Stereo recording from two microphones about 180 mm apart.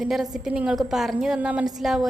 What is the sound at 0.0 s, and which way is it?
A woman's voice, centre (ahead or behind).